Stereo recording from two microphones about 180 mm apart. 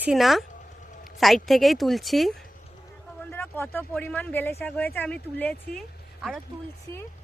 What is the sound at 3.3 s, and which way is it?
Speech, 10° left (ahead or behind).